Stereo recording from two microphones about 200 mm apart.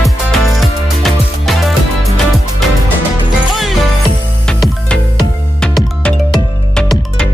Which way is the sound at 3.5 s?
Centre (ahead or behind).